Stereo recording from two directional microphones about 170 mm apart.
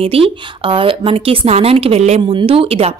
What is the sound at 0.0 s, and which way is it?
Speech, 35° right (ahead or behind).